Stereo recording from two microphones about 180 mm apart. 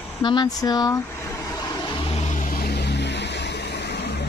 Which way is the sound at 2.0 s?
35° left (ahead or behind).